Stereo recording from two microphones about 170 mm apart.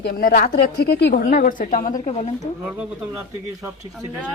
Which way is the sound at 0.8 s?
80° left.